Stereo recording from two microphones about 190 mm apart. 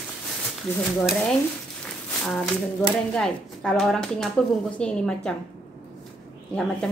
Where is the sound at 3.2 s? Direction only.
5° left (ahead or behind).